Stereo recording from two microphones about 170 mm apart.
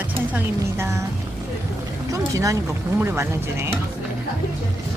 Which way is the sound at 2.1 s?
20° right (ahead or behind).